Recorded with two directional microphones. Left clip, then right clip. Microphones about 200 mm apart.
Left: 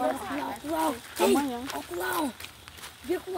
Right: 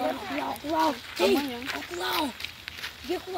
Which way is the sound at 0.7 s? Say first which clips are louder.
Right 3 dB; 35° left (ahead or behind).